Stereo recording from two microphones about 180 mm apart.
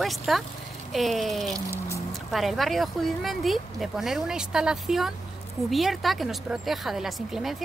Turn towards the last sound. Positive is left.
turn(degrees=0)  # may be behind; listen again after turning